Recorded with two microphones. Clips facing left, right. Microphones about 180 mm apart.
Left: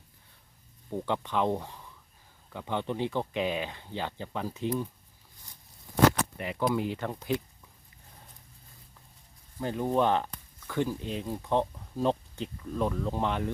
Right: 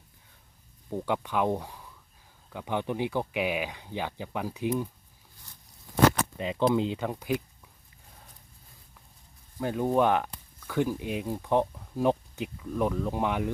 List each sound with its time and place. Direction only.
0.9 s speech: 10° right (ahead or behind)
6.3 s speech: 20° right (ahead or behind)
9.6 s speech: 15° right (ahead or behind)